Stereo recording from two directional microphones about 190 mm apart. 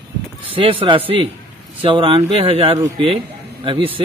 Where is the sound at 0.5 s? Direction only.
30° right (ahead or behind).